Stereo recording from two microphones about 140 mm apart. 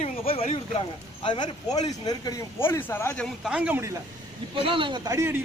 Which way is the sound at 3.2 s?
5° right (ahead or behind).